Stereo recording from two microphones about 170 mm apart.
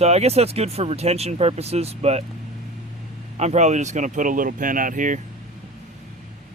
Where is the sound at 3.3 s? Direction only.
40° right (ahead or behind).